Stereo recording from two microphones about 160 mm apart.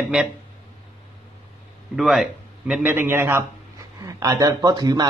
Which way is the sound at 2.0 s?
Centre (ahead or behind).